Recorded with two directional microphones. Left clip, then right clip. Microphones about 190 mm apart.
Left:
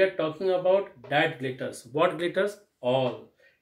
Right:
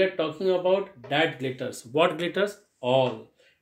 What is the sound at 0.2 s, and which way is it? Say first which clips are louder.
Speech: right 1 dB; 40° right (ahead or behind).